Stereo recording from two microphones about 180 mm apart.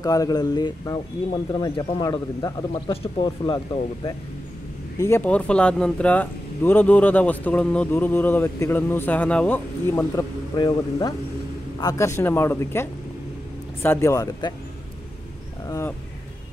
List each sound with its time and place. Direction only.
0.0 s speech: 20° left (ahead or behind)
13.8 s speech: 15° left (ahead or behind)